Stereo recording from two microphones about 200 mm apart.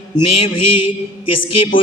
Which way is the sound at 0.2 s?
25° left (ahead or behind).